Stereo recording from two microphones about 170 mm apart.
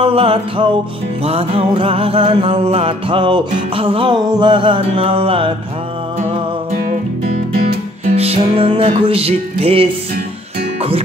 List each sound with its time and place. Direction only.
0.0 s music: 35° right (ahead or behind)
8.2 s music: 35° right (ahead or behind)